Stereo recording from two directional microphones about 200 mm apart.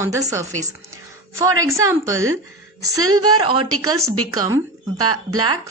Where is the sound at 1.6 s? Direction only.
15° right (ahead or behind).